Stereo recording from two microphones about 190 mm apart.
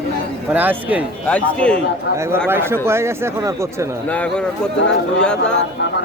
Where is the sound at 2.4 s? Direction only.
10° right (ahead or behind).